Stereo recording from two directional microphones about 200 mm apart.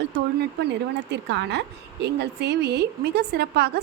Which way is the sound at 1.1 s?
60° right (ahead or behind).